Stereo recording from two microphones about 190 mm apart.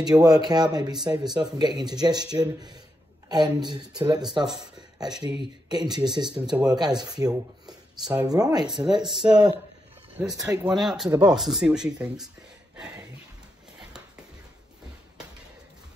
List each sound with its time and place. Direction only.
0.0 s speech: 20° right (ahead or behind)
8.0 s speech: 10° right (ahead or behind)
8.3 s speech: 20° right (ahead or behind)
10.7 s speech: centre (ahead or behind)
11.1 s speech: 20° right (ahead or behind)
11.3 s speech: centre (ahead or behind)